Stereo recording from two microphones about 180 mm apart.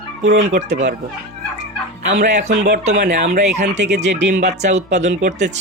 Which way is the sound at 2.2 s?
40° right (ahead or behind).